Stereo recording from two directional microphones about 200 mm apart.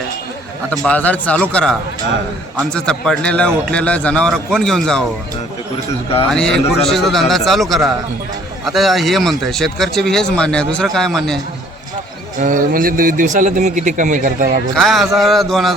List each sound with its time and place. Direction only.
0.7 s a man's voice: 5° left (ahead or behind)
2.7 s speech: 5° left (ahead or behind)
6.3 s speech: 5° left (ahead or behind)
12.4 s a man's voice: 45° right (ahead or behind)
14.8 s speech: centre (ahead or behind)